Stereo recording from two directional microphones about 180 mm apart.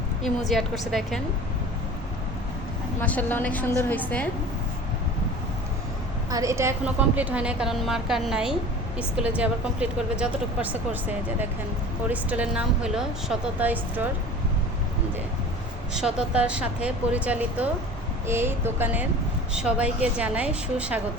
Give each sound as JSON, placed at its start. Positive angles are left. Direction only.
{"t": 0.2, "sound": "a woman's voice", "side_deg": 0}
{"t": 3.0, "sound": "a woman's voice", "side_deg": 10}
{"t": 6.3, "sound": "a woman's voice", "side_deg": -15}
{"t": 12.0, "sound": "speech", "side_deg": -10}
{"t": 16.0, "sound": "speech", "side_deg": -5}